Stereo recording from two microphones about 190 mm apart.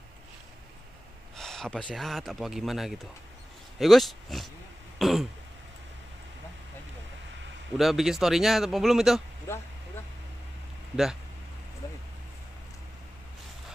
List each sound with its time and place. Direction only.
1.3 s speech: 5° left (ahead or behind)
4.9 s throat clearing: centre (ahead or behind)
7.7 s speech: centre (ahead or behind)
9.5 s speech: 15° left (ahead or behind)
11.8 s a sound: 15° left (ahead or behind)